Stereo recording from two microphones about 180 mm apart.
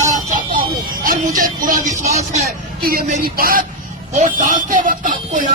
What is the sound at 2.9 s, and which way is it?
Speech, 50° right (ahead or behind).